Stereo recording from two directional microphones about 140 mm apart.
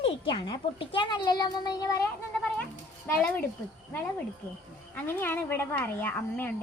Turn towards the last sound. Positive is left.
turn(degrees=10)  # may be behind; listen again after turning